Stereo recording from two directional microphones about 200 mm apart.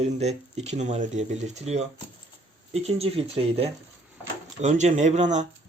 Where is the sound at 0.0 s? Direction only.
35° right (ahead or behind).